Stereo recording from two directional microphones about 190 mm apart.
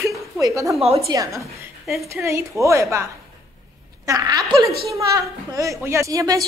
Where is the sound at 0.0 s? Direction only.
15° right (ahead or behind).